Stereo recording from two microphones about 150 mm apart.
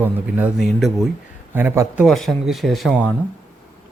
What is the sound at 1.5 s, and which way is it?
Speech, 15° right (ahead or behind).